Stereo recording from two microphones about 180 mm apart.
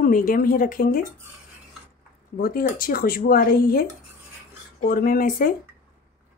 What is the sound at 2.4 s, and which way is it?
Speech, 55° left (ahead or behind).